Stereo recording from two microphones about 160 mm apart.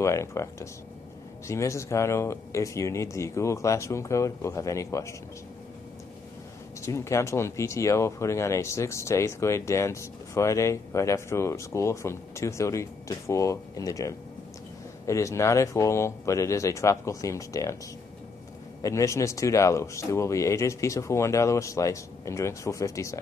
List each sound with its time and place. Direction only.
0.0 s speech: 20° left (ahead or behind)
6.8 s speech: 20° left (ahead or behind)
18.8 s speech: 20° left (ahead or behind)